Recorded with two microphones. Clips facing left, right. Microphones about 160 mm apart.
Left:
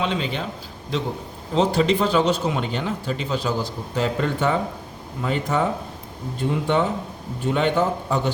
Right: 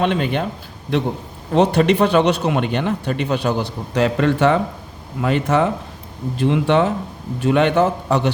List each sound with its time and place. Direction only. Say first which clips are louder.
0.0 s speech: right 6 dB; 60° right (ahead or behind); by 5.6 s 75° right (ahead or behind)
6.3 s a man's voice: right 5 dB; 85° right